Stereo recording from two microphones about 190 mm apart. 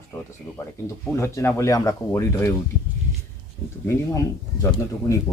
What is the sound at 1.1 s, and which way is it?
Speech, 15° left (ahead or behind).